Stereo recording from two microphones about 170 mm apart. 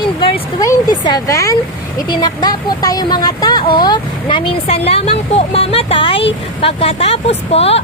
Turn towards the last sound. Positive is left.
turn(degrees=35)  # may be behind; listen again after turning